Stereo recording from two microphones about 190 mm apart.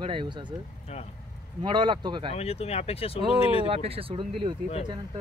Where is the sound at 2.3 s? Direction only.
30° left (ahead or behind).